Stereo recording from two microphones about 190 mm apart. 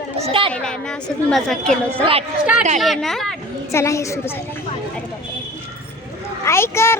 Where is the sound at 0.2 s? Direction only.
30° right (ahead or behind).